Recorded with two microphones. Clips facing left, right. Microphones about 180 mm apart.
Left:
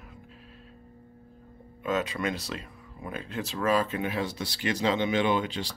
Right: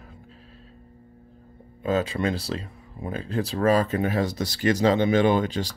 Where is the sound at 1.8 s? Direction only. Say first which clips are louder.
Right 5 dB; 30° right (ahead or behind).